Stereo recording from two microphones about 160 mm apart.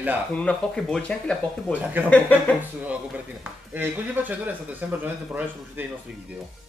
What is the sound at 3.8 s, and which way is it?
Speech, 10° right (ahead or behind).